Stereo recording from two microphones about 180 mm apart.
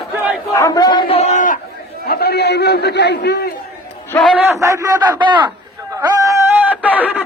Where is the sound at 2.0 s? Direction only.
60° left (ahead or behind).